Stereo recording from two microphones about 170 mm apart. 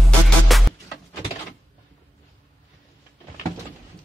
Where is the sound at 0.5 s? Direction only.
Centre (ahead or behind).